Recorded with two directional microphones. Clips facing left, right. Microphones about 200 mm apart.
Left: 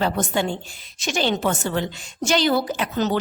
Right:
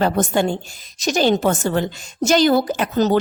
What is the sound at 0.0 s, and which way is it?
A woman's voice, 45° right (ahead or behind).